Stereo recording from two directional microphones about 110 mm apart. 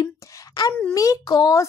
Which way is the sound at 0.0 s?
35° left (ahead or behind).